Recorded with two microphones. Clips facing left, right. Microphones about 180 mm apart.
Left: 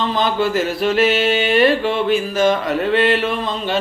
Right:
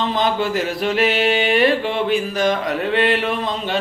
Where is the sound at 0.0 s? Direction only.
15° right (ahead or behind).